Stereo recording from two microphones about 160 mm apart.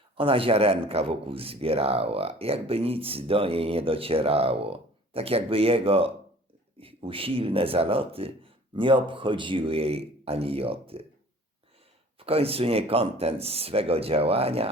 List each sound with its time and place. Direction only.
0.2 s a man's voice: 35° right (ahead or behind)
12.2 s a man's voice: 35° right (ahead or behind)